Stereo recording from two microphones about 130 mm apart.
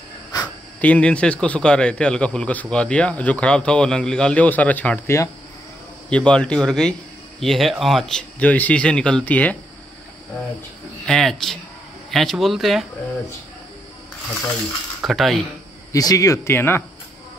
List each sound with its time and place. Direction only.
0.3 s a sound: 30° left (ahead or behind)
0.7 s a man's voice: 10° left (ahead or behind)
11.1 s speech: 5° left (ahead or behind)
15.0 s speech: centre (ahead or behind)
15.9 s speech: 25° left (ahead or behind)